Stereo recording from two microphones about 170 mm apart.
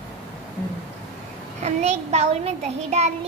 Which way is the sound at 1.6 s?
40° right (ahead or behind).